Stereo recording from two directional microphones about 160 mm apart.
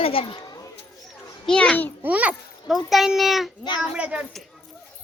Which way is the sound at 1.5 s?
5° left (ahead or behind).